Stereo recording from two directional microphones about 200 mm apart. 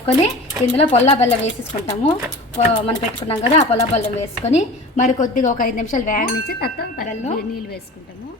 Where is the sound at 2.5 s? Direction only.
30° left (ahead or behind); by 7.2 s 50° left (ahead or behind).